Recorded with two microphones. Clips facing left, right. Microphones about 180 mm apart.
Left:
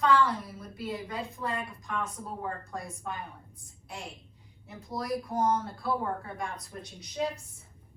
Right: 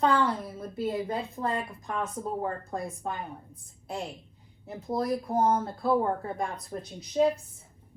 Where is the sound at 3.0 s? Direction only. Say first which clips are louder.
Right 2 dB; 35° right (ahead or behind).